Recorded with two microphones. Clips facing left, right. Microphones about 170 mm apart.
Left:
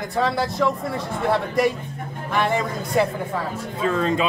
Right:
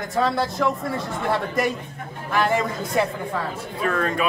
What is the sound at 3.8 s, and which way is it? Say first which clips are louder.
Speech: left 2 dB; 20° left (ahead or behind).